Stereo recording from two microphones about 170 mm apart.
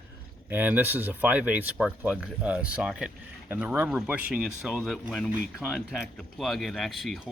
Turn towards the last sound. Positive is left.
turn(degrees=0)  # may be behind; listen again after turning